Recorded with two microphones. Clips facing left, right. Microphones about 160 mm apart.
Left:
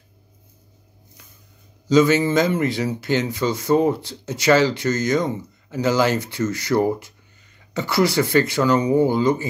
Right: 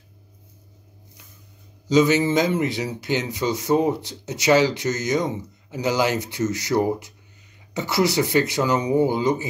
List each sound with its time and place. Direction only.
1.9 s speech: 15° right (ahead or behind)